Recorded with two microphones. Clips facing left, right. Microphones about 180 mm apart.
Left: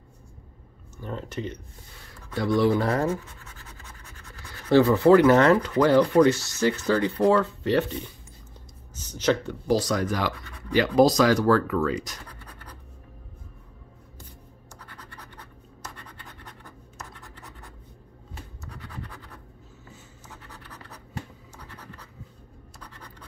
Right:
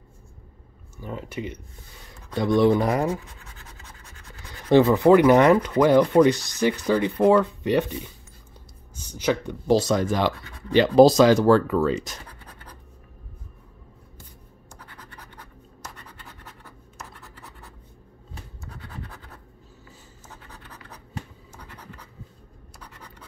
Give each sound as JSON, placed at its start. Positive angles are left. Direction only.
{"t": 0.9, "sound": "speech", "side_deg": -10}
{"t": 4.5, "sound": "speech", "side_deg": -20}
{"t": 22.8, "sound": "scratch", "side_deg": -10}